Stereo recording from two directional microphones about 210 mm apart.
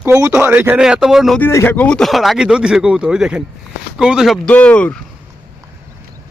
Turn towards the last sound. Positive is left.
turn(degrees=5)  # may be behind; listen again after turning